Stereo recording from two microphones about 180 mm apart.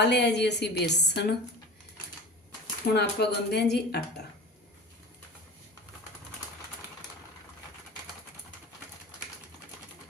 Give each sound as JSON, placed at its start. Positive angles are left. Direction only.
{"t": 0.0, "sound": "a woman's voice", "side_deg": 70}
{"t": 2.9, "sound": "a woman's voice", "side_deg": 65}